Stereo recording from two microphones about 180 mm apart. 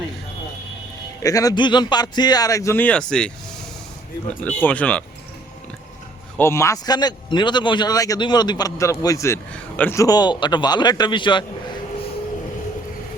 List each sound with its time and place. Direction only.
1.2 s a man's voice: 20° left (ahead or behind)
4.4 s speech: 5° left (ahead or behind)
6.3 s a man's voice: 15° left (ahead or behind)